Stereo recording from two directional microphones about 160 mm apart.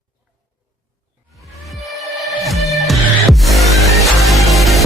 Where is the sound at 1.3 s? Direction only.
Centre (ahead or behind).